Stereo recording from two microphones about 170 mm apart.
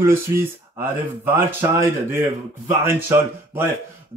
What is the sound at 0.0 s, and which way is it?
Speech, 15° right (ahead or behind).